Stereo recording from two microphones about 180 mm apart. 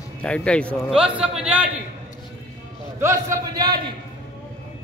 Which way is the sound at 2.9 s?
20° right (ahead or behind).